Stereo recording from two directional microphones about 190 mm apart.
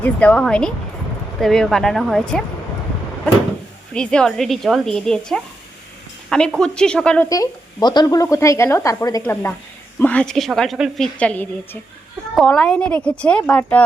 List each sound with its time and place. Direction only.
0.0 s a woman's voice: 5° left (ahead or behind)
3.9 s a woman's voice: 5° left (ahead or behind)
6.6 s a woman's voice: 5° left (ahead or behind)
7.3 s a woman's voice: 20° left (ahead or behind)